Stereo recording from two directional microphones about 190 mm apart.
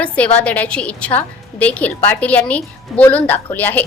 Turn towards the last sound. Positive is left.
turn(degrees=10)  # may be behind; listen again after turning